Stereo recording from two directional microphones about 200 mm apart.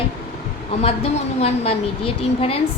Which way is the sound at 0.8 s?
30° left (ahead or behind).